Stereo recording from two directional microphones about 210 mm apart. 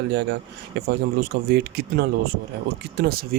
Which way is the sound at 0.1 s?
55° right (ahead or behind).